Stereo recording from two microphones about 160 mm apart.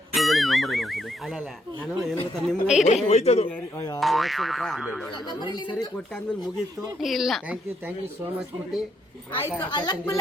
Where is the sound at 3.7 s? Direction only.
20° left (ahead or behind).